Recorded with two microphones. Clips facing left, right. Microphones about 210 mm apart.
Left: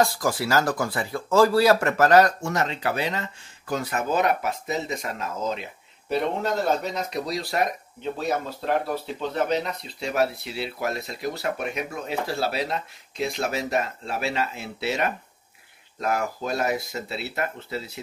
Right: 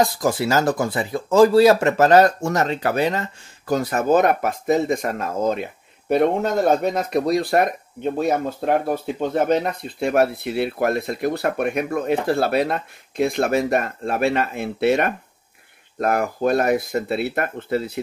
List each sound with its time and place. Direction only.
0.0 s speech: 20° right (ahead or behind)
2.4 s speech: 40° right (ahead or behind)